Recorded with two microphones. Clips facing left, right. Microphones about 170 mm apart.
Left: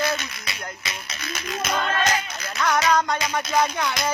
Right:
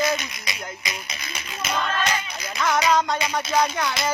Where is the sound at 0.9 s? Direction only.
Centre (ahead or behind).